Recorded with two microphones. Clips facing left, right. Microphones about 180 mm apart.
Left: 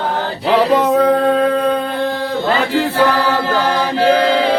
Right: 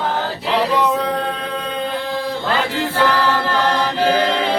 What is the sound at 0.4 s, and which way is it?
Music, 60° left (ahead or behind).